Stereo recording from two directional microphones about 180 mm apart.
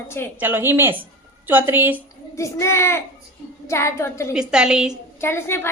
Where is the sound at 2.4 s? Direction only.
15° left (ahead or behind).